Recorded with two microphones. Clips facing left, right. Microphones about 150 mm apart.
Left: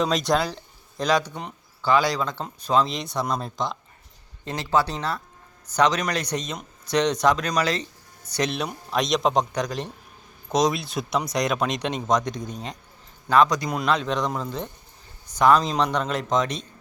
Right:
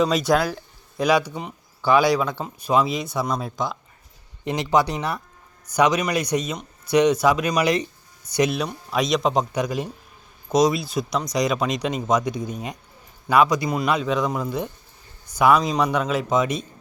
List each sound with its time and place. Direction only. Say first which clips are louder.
0.0 s speech: right 3 dB; 5° right (ahead or behind)
4.4 s speech: right 3 dB; 15° right (ahead or behind)